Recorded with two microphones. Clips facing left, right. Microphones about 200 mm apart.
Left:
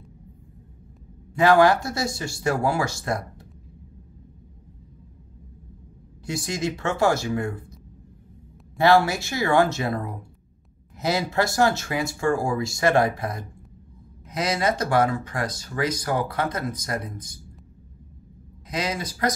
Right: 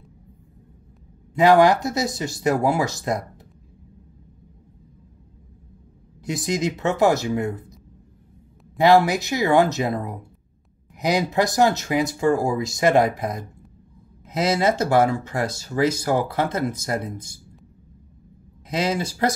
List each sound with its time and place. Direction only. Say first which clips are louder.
1.3 s speech: right 2 dB; 20° right (ahead or behind)
6.2 s speech: right 3 dB; 20° right (ahead or behind)
8.7 s speech: right 3 dB; 20° right (ahead or behind)
18.7 s speech: right 5 dB; 25° right (ahead or behind)